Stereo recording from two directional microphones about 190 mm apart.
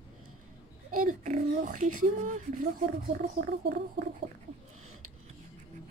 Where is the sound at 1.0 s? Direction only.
45° right (ahead or behind).